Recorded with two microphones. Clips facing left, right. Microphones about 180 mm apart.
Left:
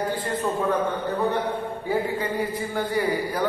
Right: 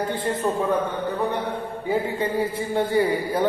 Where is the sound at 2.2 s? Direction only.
25° right (ahead or behind).